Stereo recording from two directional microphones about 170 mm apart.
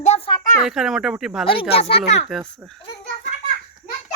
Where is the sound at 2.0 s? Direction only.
Centre (ahead or behind).